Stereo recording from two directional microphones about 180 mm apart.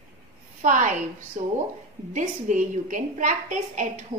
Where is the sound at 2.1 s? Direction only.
45° right (ahead or behind).